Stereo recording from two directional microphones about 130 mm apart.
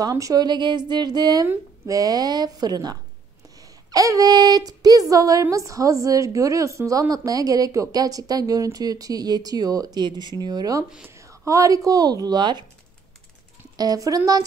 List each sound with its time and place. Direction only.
0.0 s a woman's voice: 25° right (ahead or behind)
13.7 s speech: 30° right (ahead or behind)